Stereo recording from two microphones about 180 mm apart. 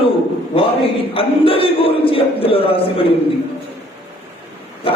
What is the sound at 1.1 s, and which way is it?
A man's voice, 30° left (ahead or behind).